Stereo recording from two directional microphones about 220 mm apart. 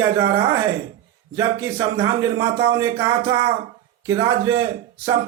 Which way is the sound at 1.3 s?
15° right (ahead or behind).